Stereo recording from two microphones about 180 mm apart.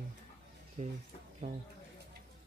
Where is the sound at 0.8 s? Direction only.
40° right (ahead or behind).